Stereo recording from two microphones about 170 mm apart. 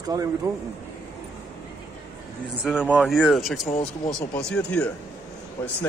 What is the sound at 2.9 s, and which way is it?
Speech, centre (ahead or behind).